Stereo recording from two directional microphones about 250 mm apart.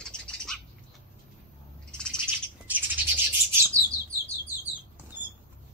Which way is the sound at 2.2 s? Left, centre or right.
Centre.